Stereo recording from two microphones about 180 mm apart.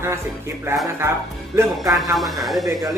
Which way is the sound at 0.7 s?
15° right (ahead or behind).